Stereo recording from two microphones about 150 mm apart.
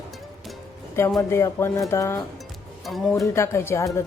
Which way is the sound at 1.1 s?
20° left (ahead or behind).